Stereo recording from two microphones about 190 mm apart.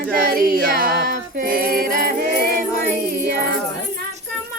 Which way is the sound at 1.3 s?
50° right (ahead or behind).